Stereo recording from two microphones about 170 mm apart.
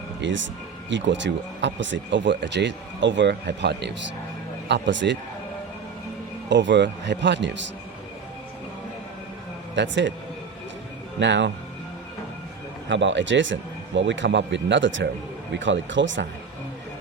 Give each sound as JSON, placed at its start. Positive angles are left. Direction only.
{"t": 0.2, "sound": "speech", "side_deg": -90}
{"t": 6.5, "sound": "speech", "side_deg": -90}
{"t": 9.7, "sound": "speech", "side_deg": -90}
{"t": 11.2, "sound": "speech", "side_deg": -90}
{"t": 12.9, "sound": "speech", "side_deg": -90}